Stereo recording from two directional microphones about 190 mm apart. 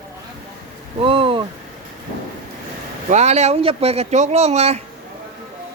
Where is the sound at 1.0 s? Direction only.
30° right (ahead or behind).